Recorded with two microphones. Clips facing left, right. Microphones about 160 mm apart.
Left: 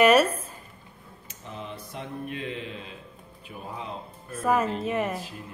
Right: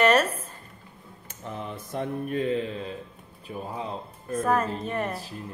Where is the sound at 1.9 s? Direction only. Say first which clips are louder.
Right 8 dB; 45° right (ahead or behind).